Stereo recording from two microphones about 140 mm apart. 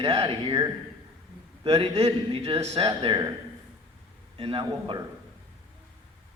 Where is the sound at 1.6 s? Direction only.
40° right (ahead or behind).